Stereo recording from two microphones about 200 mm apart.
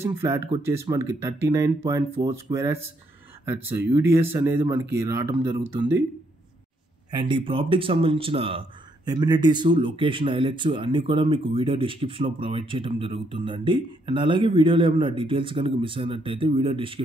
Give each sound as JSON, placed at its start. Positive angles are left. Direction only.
{"t": 0.0, "sound": "speech", "side_deg": -10}
{"t": 7.2, "sound": "speech", "side_deg": -25}